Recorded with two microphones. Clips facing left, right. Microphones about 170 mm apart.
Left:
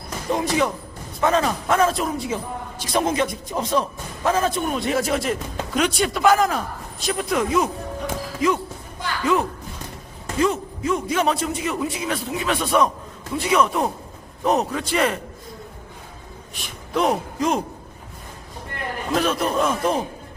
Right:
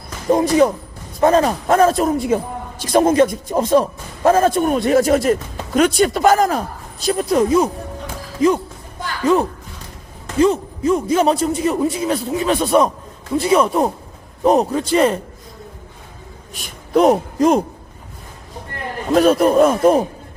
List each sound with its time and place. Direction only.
0.3 s a man's voice: 40° right (ahead or behind)
16.6 s a man's voice: 40° right (ahead or behind)
19.1 s speech: 40° right (ahead or behind)